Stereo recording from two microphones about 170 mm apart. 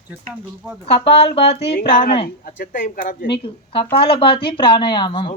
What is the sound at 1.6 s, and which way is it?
Speech, 65° left (ahead or behind).